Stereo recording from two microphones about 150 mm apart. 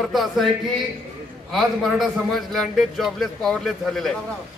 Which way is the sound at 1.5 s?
Centre (ahead or behind).